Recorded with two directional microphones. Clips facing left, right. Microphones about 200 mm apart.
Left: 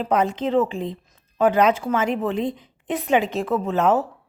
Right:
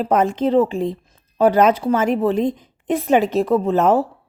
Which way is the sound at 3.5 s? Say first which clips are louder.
Right 3 dB; 35° right (ahead or behind).